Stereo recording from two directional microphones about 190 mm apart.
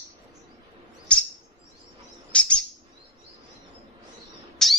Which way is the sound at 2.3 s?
5° left (ahead or behind).